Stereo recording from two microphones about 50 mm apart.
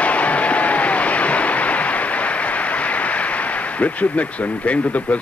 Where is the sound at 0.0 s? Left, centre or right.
Left.